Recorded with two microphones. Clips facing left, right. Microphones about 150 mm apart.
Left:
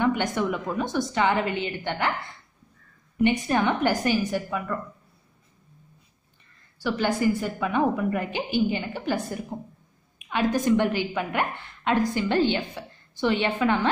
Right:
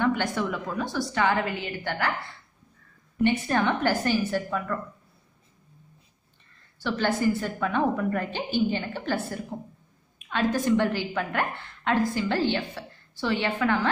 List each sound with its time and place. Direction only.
0.0 s a woman's voice: 15° left (ahead or behind)
3.2 s a woman's voice: 15° left (ahead or behind)
6.8 s a woman's voice: 10° left (ahead or behind)